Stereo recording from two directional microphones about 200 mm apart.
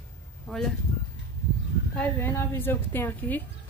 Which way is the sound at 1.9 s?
10° left (ahead or behind).